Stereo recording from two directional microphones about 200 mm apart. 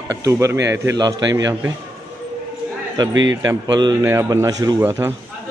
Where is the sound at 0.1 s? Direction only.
15° right (ahead or behind).